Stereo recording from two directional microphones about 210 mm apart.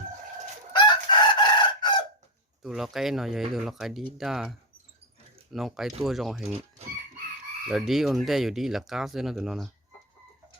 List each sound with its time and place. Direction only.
0.7 s chicken: 20° left (ahead or behind)
2.6 s speech: centre (ahead or behind)
7.7 s speech: centre (ahead or behind)